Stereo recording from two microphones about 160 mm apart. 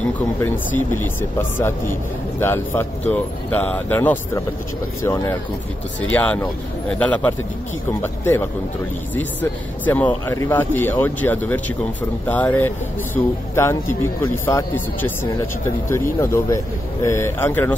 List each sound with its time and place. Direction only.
0.0 s speech: 10° left (ahead or behind)
2.4 s speech: 15° left (ahead or behind)
6.1 s speech: 10° left (ahead or behind)